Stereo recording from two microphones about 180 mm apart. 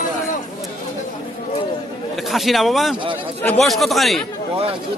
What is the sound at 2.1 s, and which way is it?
Speech, centre (ahead or behind).